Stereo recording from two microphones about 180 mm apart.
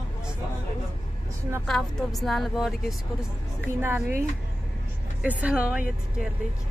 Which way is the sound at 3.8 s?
15° right (ahead or behind).